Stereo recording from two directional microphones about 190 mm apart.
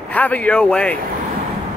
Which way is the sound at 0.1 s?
10° left (ahead or behind).